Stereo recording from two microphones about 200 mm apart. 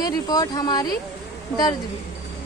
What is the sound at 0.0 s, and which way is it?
Speech, 20° left (ahead or behind).